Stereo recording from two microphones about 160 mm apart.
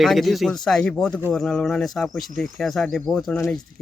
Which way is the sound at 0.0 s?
Centre (ahead or behind).